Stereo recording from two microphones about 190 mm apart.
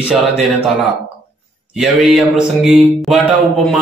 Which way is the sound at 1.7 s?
Centre (ahead or behind).